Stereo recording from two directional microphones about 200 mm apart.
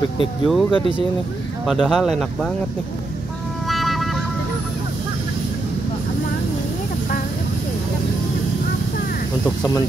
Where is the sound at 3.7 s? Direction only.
Centre (ahead or behind).